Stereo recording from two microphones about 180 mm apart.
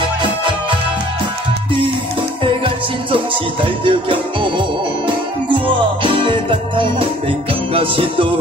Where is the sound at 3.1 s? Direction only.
30° right (ahead or behind).